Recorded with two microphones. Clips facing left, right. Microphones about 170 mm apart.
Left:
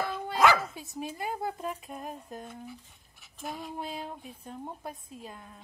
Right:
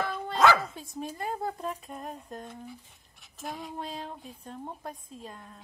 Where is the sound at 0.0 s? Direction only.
5° left (ahead or behind).